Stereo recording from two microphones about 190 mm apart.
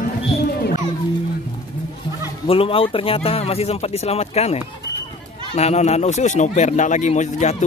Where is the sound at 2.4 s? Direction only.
30° left (ahead or behind).